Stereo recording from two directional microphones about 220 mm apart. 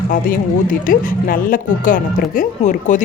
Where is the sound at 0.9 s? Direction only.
40° left (ahead or behind).